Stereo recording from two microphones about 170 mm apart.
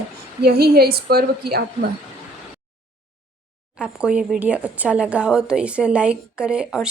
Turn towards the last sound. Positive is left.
turn(degrees=-5)  # may be behind; listen again after turning